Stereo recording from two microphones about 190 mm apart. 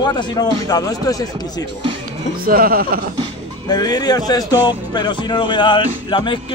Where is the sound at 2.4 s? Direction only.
50° right (ahead or behind).